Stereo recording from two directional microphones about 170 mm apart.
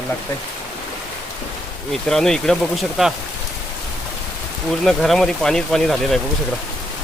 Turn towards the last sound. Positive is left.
turn(degrees=0)  # may be behind; listen again after turning